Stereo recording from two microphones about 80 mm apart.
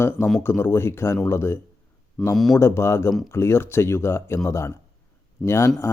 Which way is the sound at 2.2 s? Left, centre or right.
Centre.